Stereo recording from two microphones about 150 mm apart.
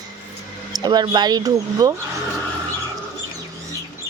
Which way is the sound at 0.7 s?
25° right (ahead or behind).